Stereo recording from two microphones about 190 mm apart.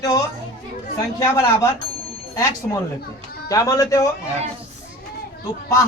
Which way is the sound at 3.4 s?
15° left (ahead or behind).